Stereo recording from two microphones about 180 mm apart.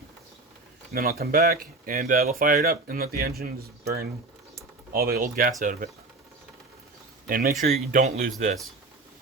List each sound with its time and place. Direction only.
0.9 s speech: 55° right (ahead or behind)
7.3 s speech: 55° right (ahead or behind)
8.0 s speech: 40° right (ahead or behind)